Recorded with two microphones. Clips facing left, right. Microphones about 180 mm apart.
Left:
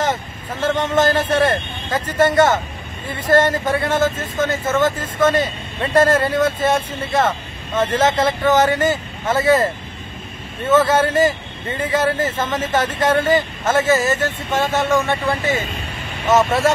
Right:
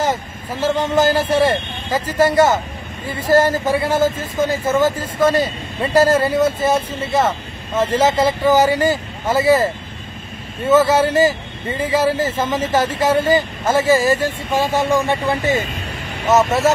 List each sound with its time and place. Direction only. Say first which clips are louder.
0.0 s speech: right 1 dB; 10° right (ahead or behind)
10.7 s speech: right 2 dB; 10° right (ahead or behind)
16.3 s speech: right 1 dB; 5° right (ahead or behind)